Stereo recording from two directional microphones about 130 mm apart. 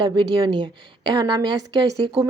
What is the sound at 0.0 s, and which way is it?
A woman's voice, 35° right (ahead or behind).